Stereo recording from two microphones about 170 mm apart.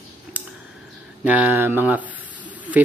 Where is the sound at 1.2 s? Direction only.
10° right (ahead or behind).